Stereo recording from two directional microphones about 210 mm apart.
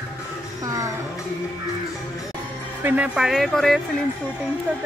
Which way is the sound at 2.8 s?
5° right (ahead or behind).